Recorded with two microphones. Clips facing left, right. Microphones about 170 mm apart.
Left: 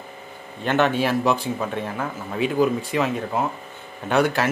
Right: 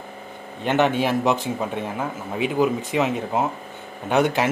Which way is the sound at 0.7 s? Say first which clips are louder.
Even; 15° right (ahead or behind).